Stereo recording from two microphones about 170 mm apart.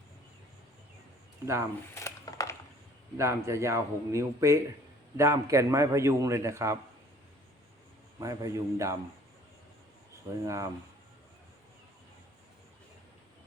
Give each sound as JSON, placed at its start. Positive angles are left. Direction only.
{"t": 2.0, "sound": "a sound", "side_deg": 20}
{"t": 3.2, "sound": "a man's voice", "side_deg": -15}
{"t": 8.2, "sound": "a man's voice", "side_deg": -20}
{"t": 10.2, "sound": "a man's voice", "side_deg": -20}